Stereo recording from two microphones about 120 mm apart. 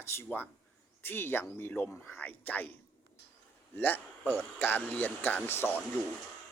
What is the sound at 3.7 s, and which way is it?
A man's voice, 15° left (ahead or behind).